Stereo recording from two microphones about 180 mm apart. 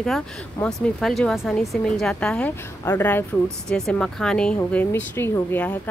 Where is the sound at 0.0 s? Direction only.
5° left (ahead or behind).